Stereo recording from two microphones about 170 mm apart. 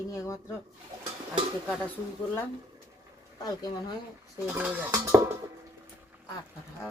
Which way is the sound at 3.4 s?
25° left (ahead or behind).